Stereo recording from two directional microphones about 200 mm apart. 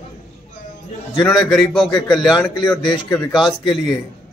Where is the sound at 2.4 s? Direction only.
20° left (ahead or behind).